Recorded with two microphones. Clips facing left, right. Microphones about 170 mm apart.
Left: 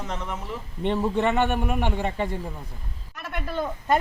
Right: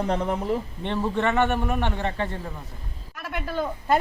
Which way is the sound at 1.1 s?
15° left (ahead or behind).